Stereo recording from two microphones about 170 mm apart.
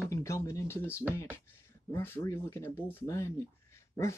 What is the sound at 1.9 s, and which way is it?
Speech, 15° left (ahead or behind).